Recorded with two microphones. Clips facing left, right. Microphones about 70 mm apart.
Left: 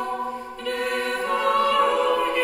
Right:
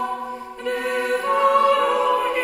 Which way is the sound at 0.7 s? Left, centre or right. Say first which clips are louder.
Right 3 dB; centre.